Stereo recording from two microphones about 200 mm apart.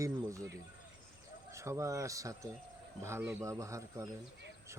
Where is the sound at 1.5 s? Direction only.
15° right (ahead or behind).